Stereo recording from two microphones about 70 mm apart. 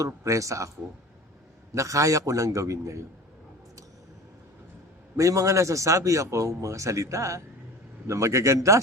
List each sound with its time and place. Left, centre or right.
0.0 s a man's voice: right
1.7 s a man's voice: right
5.1 s a man's voice: right